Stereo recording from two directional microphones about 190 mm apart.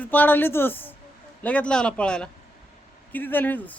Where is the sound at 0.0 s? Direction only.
10° left (ahead or behind).